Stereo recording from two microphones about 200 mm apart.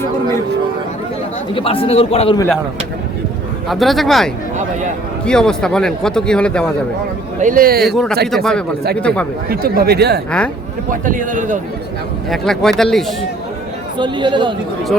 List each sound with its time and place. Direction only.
1.5 s a man's voice: 25° left (ahead or behind)
3.7 s a man's voice: centre (ahead or behind)
4.5 s speech: 40° right (ahead or behind)
5.2 s a man's voice: 5° left (ahead or behind)
7.3 s speech: 40° right (ahead or behind)
7.9 s a man's voice: centre (ahead or behind)
9.5 s speech: 50° right (ahead or behind)
11.0 s a man's voice: 40° right (ahead or behind)
12.3 s a man's voice: centre (ahead or behind)
14.0 s speech: 25° right (ahead or behind)